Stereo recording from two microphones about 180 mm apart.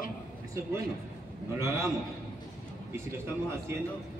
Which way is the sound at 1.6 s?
15° right (ahead or behind).